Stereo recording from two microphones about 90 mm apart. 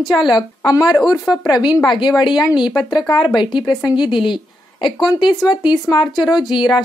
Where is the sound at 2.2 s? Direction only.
55° left (ahead or behind).